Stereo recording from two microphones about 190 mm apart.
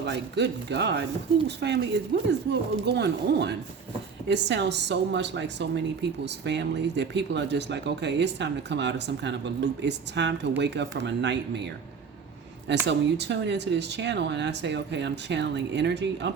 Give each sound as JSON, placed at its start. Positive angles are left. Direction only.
{"t": 0.0, "sound": "speech", "side_deg": -65}
{"t": 12.9, "sound": "speech", "side_deg": -65}